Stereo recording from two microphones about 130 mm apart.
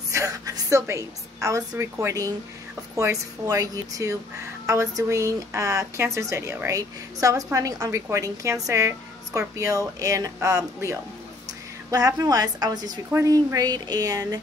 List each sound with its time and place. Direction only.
0.1 s speech: 25° right (ahead or behind)